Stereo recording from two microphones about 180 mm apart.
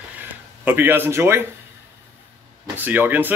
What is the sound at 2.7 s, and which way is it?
Speech, 10° right (ahead or behind).